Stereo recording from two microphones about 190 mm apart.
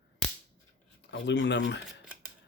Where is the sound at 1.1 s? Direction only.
65° left (ahead or behind).